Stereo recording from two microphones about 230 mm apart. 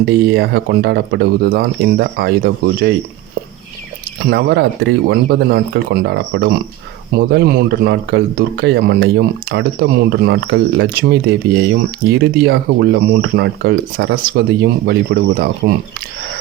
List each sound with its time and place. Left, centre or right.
0.0 s speech: right
4.2 s speech: right